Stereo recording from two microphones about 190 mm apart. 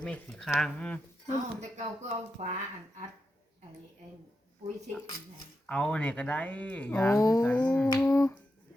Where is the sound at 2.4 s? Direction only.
35° right (ahead or behind).